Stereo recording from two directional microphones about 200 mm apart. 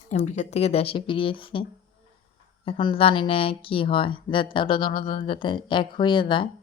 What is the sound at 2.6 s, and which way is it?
A woman's voice, 25° left (ahead or behind).